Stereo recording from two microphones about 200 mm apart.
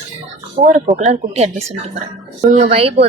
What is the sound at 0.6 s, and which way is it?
A woman's voice, 40° right (ahead or behind).